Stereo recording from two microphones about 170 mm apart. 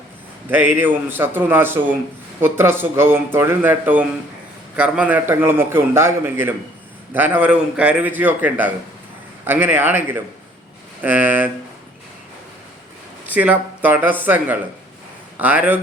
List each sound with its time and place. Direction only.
0.5 s a man's voice: 10° right (ahead or behind)
13.2 s a man's voice: 10° right (ahead or behind)